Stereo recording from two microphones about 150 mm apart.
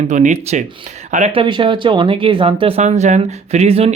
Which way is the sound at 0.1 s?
55° right (ahead or behind).